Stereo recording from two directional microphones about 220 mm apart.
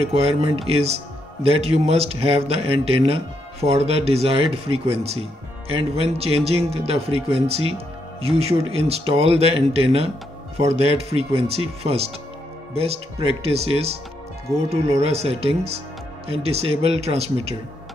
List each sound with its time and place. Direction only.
0.0 s speech: 30° right (ahead or behind)